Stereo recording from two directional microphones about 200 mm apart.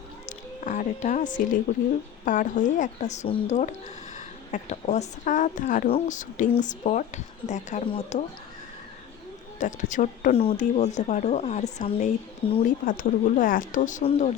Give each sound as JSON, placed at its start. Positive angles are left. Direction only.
{"t": 0.3, "sound": "speech", "side_deg": 40}
{"t": 9.6, "sound": "speech", "side_deg": 40}